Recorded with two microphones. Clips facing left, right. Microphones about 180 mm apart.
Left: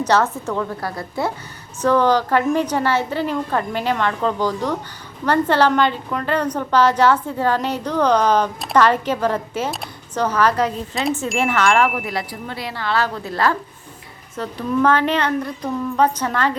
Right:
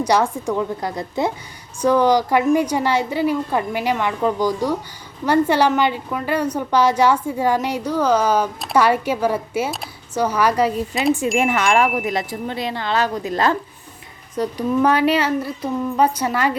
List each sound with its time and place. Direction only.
0.0 s a woman's voice: 10° right (ahead or behind)
11.3 s wind chime: 15° right (ahead or behind)
14.3 s a woman's voice: 15° right (ahead or behind)